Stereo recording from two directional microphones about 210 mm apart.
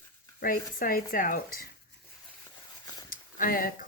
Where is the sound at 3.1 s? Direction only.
40° left (ahead or behind).